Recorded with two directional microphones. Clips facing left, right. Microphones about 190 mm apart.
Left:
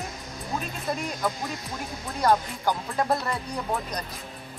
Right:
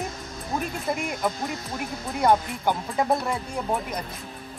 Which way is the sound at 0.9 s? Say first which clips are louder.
Right 1 dB; 15° right (ahead or behind).